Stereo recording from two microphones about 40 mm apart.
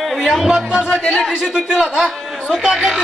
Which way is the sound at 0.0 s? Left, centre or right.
Centre.